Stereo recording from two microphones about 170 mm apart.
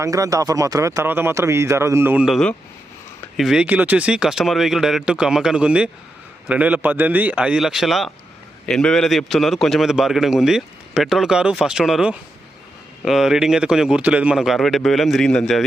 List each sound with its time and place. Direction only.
0.0 s speech: 20° right (ahead or behind); by 15.6 s 5° left (ahead or behind)